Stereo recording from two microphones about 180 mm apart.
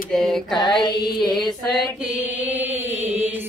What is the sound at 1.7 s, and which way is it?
Chant, 10° right (ahead or behind).